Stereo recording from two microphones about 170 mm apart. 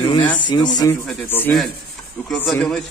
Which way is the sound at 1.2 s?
10° left (ahead or behind).